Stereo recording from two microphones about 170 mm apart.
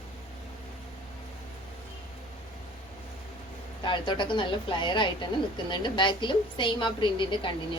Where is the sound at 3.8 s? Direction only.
30° left (ahead or behind).